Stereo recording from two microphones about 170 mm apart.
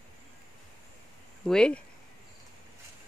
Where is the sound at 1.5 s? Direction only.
5° left (ahead or behind).